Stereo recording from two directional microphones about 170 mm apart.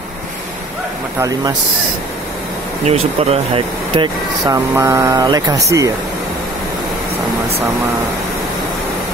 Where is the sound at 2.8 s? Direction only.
40° right (ahead or behind); by 5.9 s 20° right (ahead or behind).